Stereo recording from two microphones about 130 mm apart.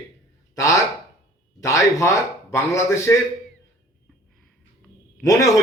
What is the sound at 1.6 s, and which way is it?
Speech, 25° left (ahead or behind).